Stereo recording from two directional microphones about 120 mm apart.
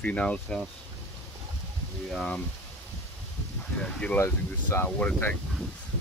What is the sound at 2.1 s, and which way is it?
Speech, 10° left (ahead or behind).